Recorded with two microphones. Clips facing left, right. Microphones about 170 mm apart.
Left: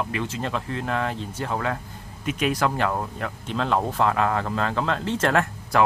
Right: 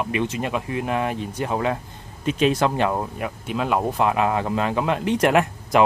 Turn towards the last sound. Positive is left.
turn(degrees=-20)  # may be behind; listen again after turning